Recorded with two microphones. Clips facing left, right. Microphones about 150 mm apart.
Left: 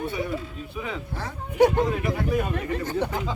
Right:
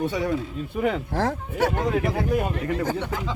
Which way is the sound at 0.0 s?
90° right.